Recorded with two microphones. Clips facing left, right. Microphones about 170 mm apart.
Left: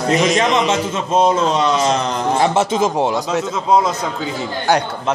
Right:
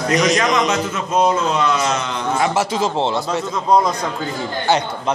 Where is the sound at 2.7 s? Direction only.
20° left (ahead or behind).